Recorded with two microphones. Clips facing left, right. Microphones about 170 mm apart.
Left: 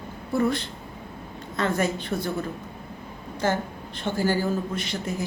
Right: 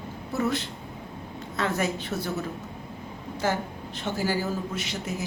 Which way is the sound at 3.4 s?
10° right (ahead or behind).